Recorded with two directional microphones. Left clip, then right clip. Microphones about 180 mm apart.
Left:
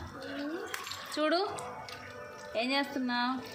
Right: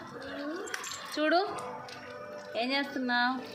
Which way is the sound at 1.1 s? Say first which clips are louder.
Right 2 dB; 10° left (ahead or behind).